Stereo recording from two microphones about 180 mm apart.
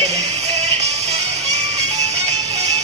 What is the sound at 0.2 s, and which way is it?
Music, 35° right (ahead or behind).